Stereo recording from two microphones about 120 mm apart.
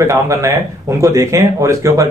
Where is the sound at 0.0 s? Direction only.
25° right (ahead or behind).